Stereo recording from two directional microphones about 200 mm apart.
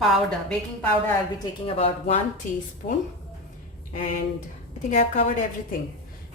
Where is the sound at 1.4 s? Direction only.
30° left (ahead or behind).